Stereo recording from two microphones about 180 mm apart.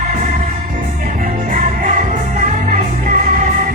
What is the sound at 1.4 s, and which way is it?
Music, 45° right (ahead or behind).